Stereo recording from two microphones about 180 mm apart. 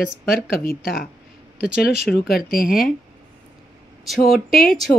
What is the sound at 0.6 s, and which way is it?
Speech, 55° left (ahead or behind).